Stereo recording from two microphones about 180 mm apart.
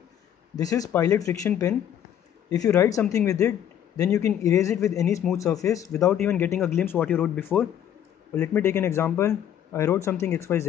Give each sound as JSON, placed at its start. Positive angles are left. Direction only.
{"t": 0.6, "sound": "speech", "side_deg": 20}
{"t": 2.5, "sound": "speech", "side_deg": 15}